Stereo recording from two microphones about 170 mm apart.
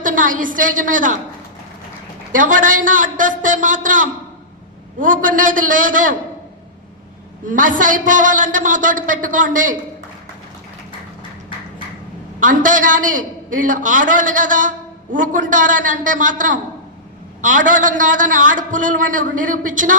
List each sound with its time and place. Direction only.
0.0 s a man's voice: 50° right (ahead or behind)
2.3 s a man's voice: 50° right (ahead or behind)
7.4 s a man's voice: 50° right (ahead or behind)
12.4 s a man's voice: 50° right (ahead or behind)